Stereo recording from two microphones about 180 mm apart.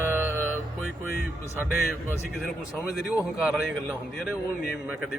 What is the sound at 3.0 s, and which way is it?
Speech, 5° right (ahead or behind).